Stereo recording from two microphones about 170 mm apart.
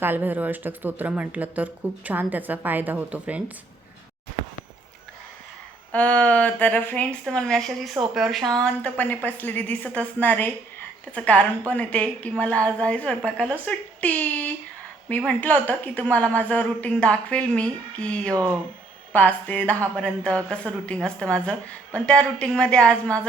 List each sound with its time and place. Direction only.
0.0 s speech: 10° right (ahead or behind)
5.9 s a woman's voice: 10° left (ahead or behind)
18.3 s speech: 10° right (ahead or behind)
19.1 s a woman's voice: 10° left (ahead or behind)